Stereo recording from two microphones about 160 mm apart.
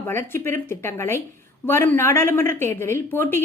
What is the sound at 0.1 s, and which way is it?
A woman's voice, 15° left (ahead or behind).